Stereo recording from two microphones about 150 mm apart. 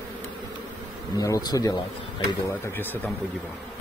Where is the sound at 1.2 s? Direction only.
25° left (ahead or behind).